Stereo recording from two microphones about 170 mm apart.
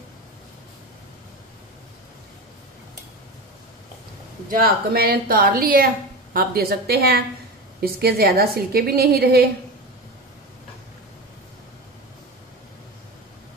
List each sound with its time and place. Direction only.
4.5 s a woman's voice: 60° right (ahead or behind)